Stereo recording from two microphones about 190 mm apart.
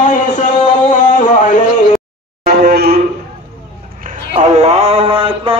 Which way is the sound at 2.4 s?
55° right (ahead or behind).